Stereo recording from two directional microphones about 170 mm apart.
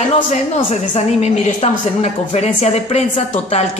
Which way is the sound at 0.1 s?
40° left (ahead or behind).